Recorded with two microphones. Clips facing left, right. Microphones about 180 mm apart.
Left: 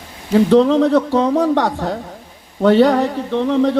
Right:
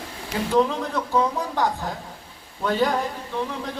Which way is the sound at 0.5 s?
75° left (ahead or behind).